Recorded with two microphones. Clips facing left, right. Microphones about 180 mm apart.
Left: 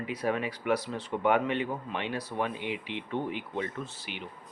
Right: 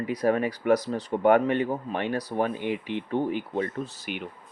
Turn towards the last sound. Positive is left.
turn(degrees=-45)  # may be behind; listen again after turning